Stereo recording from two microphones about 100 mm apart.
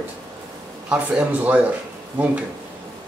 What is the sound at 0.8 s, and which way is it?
Speech, 10° right (ahead or behind).